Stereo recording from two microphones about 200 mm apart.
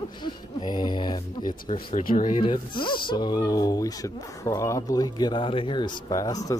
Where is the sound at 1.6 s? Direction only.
35° left (ahead or behind).